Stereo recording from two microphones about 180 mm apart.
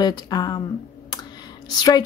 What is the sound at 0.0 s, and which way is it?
Speech, 20° left (ahead or behind).